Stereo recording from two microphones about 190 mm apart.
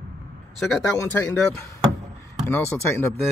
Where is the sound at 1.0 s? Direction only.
15° left (ahead or behind).